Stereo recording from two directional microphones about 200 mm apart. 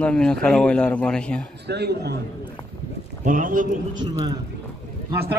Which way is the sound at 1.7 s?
55° right (ahead or behind).